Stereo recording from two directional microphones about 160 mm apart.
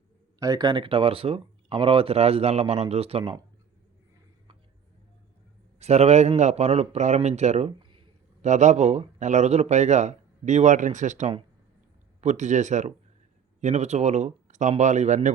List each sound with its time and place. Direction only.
0.3 s speech: 20° right (ahead or behind); by 3.3 s 35° right (ahead or behind)
5.8 s a man's voice: 45° right (ahead or behind)
7.8 s a sound: 30° right (ahead or behind)
8.4 s a man's voice: 50° right (ahead or behind)